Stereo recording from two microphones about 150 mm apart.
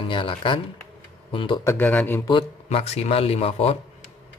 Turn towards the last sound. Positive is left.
turn(degrees=40)  # may be behind; listen again after turning